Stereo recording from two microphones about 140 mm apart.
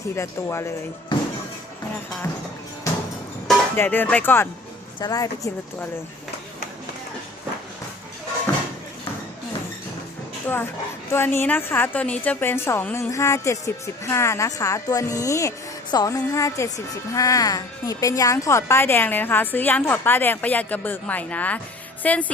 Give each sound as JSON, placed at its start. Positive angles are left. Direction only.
{"t": 0.2, "sound": "a woman's voice", "side_deg": 20}
{"t": 3.8, "sound": "a woman's voice", "side_deg": 15}
{"t": 4.9, "sound": "a woman's voice", "side_deg": 30}
{"t": 8.5, "sound": "a sound", "side_deg": 20}
{"t": 10.4, "sound": "a woman's voice", "side_deg": 15}